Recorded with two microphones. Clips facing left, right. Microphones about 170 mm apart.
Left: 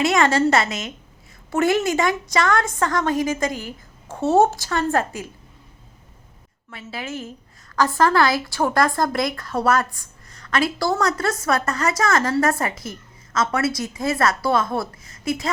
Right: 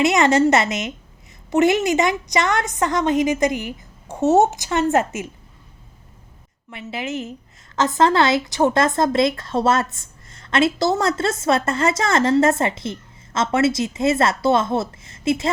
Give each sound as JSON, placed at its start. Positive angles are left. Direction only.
{"t": 0.0, "sound": "speech", "side_deg": -20}
{"t": 6.7, "sound": "speech", "side_deg": -20}